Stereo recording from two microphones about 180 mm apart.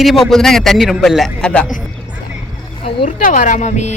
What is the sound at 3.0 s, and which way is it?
Speech, 45° left (ahead or behind).